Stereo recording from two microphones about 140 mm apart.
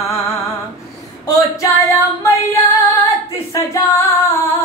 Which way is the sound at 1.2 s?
25° left (ahead or behind).